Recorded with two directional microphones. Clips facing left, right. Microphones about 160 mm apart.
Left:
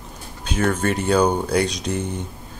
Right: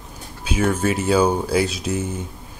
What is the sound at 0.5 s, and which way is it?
Speech, 5° right (ahead or behind).